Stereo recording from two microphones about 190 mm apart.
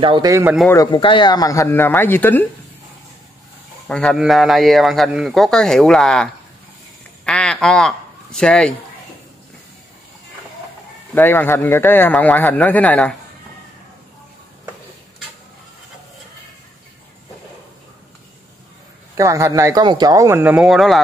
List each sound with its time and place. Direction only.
0.0 s speech: 25° right (ahead or behind)
0.7 s a man's voice: 20° left (ahead or behind)
3.8 s a man's voice: 5° left (ahead or behind)
11.1 s a man's voice: 10° left (ahead or behind)
19.1 s speech: 15° right (ahead or behind); by 21.0 s centre (ahead or behind)